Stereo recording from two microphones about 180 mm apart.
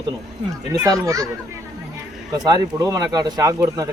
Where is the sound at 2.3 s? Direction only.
20° right (ahead or behind).